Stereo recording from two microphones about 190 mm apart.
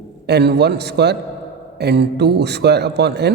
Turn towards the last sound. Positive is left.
turn(degrees=-60)  # may be behind; listen again after turning